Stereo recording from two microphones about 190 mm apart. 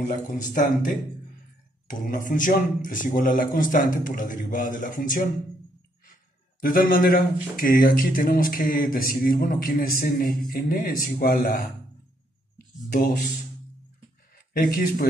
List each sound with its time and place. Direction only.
0.1 s speech: 45° left (ahead or behind)
6.6 s speech: 45° left (ahead or behind)
12.5 s a sound: 55° left (ahead or behind)
14.5 s speech: 45° left (ahead or behind)